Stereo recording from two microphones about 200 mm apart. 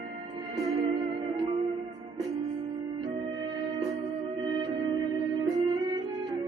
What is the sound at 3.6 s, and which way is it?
Music, 20° right (ahead or behind).